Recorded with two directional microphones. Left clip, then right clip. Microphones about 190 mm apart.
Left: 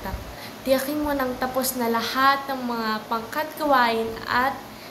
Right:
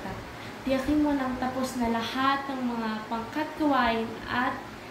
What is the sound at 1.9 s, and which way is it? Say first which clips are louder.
Speech: left 7 dB; 25° left (ahead or behind).